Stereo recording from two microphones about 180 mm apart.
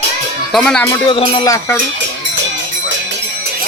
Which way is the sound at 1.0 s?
25° left (ahead or behind).